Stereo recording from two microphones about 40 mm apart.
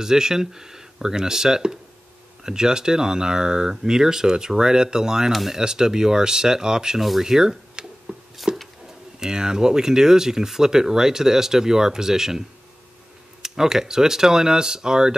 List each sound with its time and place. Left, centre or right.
0.0 s speech: centre
5.3 s speech: centre
5.6 s speech: centre
7.0 s a sound: centre
9.2 s speech: centre